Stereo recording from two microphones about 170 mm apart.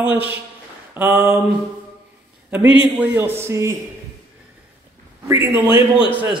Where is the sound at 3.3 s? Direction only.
15° right (ahead or behind).